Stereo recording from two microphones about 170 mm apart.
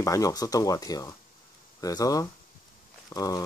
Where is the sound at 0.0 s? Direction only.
20° left (ahead or behind).